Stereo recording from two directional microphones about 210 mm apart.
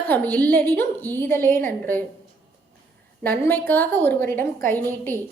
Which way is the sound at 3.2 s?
10° left (ahead or behind).